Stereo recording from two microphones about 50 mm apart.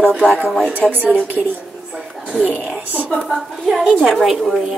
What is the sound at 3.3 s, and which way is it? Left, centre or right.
A woman's voice, centre.